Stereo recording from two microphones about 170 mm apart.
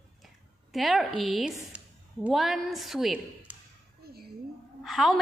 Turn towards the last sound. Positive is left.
turn(degrees=0)  # may be behind; listen again after turning